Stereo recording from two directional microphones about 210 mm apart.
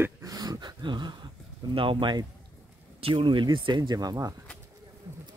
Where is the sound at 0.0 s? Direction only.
15° right (ahead or behind).